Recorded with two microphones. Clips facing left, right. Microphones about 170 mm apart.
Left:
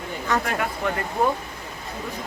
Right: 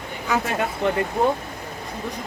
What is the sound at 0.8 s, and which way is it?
Speech, 25° right (ahead or behind).